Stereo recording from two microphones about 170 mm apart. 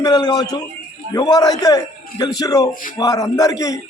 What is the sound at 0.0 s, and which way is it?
A man's voice, 25° left (ahead or behind).